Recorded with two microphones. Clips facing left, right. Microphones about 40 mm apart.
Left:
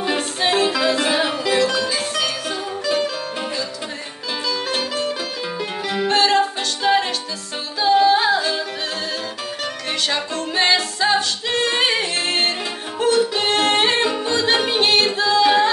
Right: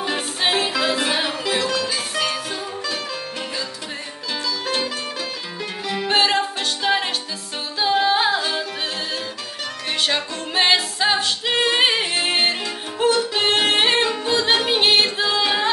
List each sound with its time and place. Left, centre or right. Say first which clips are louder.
0.4 s music: left 2 dB; centre
1.7 s music: left 2 dB; centre
4.6 s music: left 2 dB; centre
6.0 s music: left 2 dB; centre
7.8 s yodeling: left 3 dB; centre
10.5 s singing: even; centre
13.3 s music: left 1 dB; centre
15.4 s music: left 8 dB; centre